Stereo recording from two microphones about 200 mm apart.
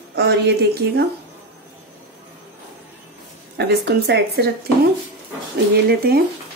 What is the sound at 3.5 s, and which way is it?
Speech, 55° right (ahead or behind).